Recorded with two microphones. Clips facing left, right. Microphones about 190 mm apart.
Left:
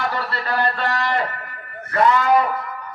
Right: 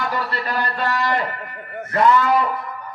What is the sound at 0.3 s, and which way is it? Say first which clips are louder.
Speech: left 2 dB; 15° right (ahead or behind).